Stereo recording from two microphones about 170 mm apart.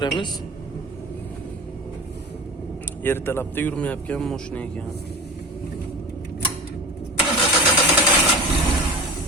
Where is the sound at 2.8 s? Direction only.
10° left (ahead or behind).